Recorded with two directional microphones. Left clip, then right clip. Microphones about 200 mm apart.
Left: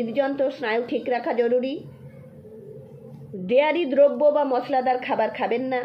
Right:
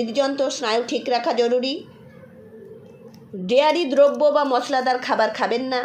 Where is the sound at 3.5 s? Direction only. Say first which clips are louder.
Right 2 dB; 30° right (ahead or behind).